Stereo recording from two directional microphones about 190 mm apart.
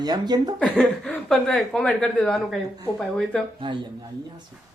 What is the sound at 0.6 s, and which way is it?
Speech, 5° left (ahead or behind).